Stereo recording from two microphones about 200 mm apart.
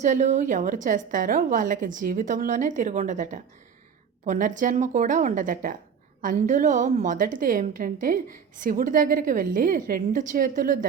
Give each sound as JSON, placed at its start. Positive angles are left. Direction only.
{"t": 0.0, "sound": "a woman's voice", "side_deg": -35}